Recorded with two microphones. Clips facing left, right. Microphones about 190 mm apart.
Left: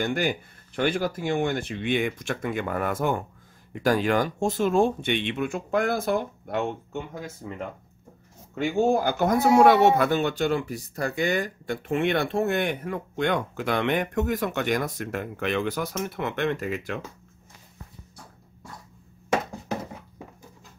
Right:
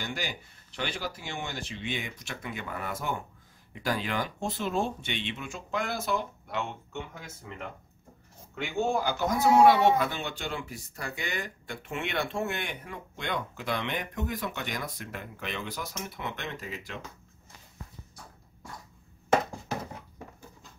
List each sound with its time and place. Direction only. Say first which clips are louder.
0.0 s speech: left 10 dB; 55° left (ahead or behind)